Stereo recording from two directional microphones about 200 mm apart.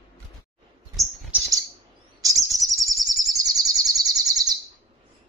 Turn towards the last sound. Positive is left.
turn(degrees=-20)  # may be behind; listen again after turning